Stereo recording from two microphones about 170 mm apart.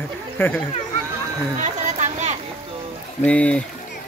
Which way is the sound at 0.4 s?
15° left (ahead or behind).